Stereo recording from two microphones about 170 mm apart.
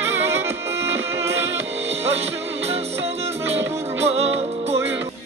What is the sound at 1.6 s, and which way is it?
Music, 40° right (ahead or behind).